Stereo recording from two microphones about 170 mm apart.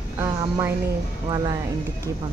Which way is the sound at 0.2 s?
15° right (ahead or behind).